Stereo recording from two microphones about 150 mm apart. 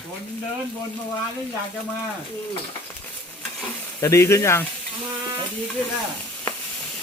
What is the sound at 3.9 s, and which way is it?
Speech, 20° left (ahead or behind).